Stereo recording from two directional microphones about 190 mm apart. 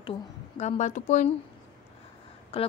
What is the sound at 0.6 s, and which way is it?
Speech, 40° left (ahead or behind).